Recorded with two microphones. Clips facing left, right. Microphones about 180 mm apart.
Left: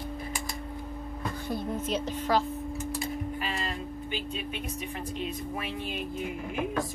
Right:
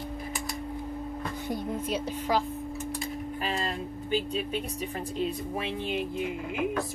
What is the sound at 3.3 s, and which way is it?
Speech, 40° right (ahead or behind).